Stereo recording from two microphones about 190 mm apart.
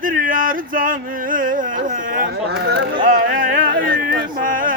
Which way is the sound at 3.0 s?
45° right (ahead or behind).